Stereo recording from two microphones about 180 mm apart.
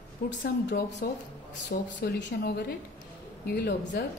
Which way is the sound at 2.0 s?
70° left (ahead or behind).